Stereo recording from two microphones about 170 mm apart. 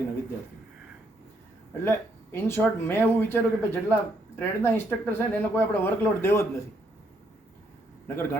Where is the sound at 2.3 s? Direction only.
15° left (ahead or behind).